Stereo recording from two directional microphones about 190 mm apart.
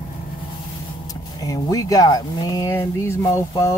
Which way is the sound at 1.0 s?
20° left (ahead or behind).